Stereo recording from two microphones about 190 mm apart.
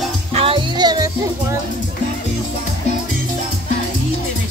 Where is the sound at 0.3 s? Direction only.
30° right (ahead or behind).